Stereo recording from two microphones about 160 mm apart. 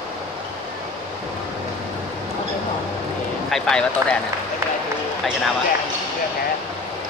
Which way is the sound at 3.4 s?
5° left (ahead or behind).